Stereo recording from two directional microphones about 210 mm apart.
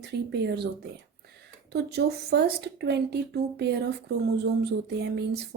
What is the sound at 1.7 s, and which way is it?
A woman's voice, 50° right (ahead or behind).